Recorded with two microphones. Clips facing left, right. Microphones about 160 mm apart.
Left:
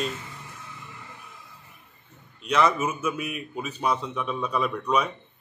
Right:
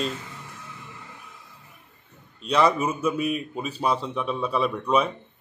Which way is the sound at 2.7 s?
35° right (ahead or behind).